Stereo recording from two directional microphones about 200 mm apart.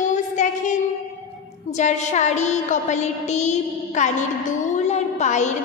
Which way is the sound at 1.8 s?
35° left (ahead or behind).